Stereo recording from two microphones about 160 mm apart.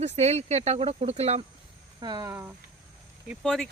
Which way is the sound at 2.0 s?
25° right (ahead or behind).